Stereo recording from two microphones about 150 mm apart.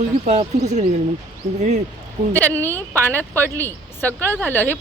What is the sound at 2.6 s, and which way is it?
Speech, 15° left (ahead or behind).